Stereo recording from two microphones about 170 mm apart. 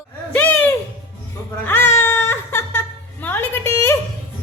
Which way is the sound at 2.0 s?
15° left (ahead or behind).